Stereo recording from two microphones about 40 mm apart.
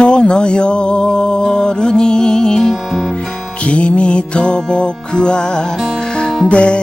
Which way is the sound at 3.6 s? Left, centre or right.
Left.